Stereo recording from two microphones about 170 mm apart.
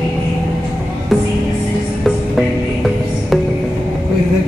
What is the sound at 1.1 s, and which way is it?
Music, centre (ahead or behind).